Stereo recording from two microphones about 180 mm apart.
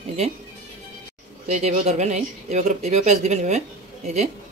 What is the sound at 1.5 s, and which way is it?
Speech, 40° right (ahead or behind).